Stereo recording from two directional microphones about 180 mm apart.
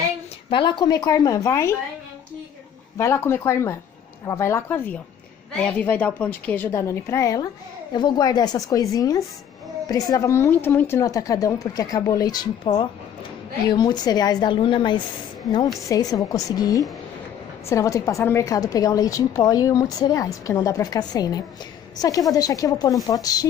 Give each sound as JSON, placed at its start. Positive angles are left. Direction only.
{"t": 0.5, "sound": "a woman's voice", "side_deg": 25}
{"t": 3.0, "sound": "a woman's voice", "side_deg": 15}